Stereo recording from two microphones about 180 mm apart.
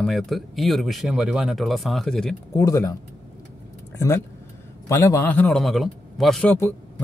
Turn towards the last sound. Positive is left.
turn(degrees=10)  # may be behind; listen again after turning